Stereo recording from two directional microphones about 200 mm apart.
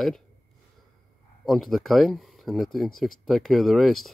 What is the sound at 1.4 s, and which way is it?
Speech, centre (ahead or behind).